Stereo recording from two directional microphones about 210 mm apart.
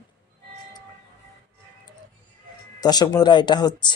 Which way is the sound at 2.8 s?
20° left (ahead or behind).